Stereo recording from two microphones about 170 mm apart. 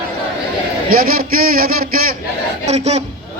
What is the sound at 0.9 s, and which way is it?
A man's voice, 60° right (ahead or behind).